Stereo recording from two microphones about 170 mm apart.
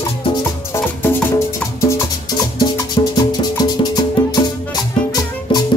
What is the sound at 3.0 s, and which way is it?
Music, 30° left (ahead or behind).